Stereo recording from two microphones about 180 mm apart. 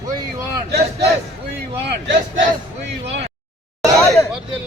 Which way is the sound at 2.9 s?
75° right (ahead or behind).